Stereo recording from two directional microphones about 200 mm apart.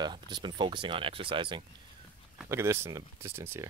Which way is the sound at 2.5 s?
15° right (ahead or behind).